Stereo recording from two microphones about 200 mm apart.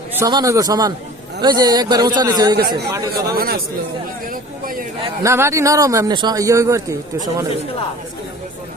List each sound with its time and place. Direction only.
0.1 s a man's voice: 15° right (ahead or behind)
2.6 s speech: 55° right (ahead or behind)
5.2 s speech: 15° right (ahead or behind)